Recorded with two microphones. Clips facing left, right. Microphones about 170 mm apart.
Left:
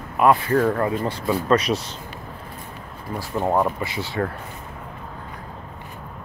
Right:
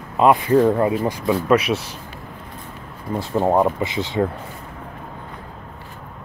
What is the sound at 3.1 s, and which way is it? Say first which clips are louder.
Speech: right 4 dB; 20° right (ahead or behind).